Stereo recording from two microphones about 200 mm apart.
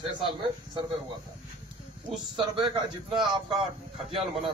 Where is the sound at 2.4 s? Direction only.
20° right (ahead or behind).